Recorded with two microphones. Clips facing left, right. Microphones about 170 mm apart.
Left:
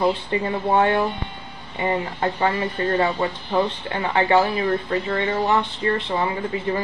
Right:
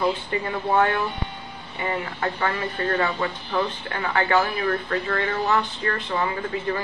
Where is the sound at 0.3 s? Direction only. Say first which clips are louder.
Left 3 dB; 25° left (ahead or behind).